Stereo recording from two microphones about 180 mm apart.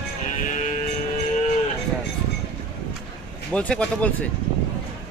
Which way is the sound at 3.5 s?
5° left (ahead or behind).